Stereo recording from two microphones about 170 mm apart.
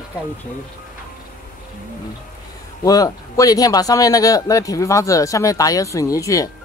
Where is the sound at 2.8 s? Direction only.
20° left (ahead or behind).